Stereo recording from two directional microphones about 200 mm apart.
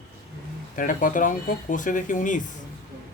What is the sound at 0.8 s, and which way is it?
Speech, 40° left (ahead or behind).